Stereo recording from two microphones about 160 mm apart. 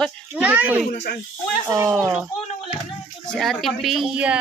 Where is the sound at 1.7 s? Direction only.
15° right (ahead or behind).